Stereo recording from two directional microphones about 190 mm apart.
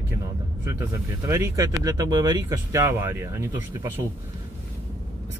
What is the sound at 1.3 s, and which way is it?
Speech, 15° right (ahead or behind).